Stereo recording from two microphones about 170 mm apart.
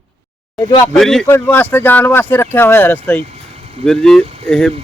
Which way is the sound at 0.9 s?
5° left (ahead or behind).